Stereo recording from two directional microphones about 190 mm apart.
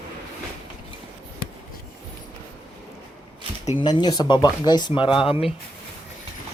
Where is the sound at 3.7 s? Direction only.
25° left (ahead or behind).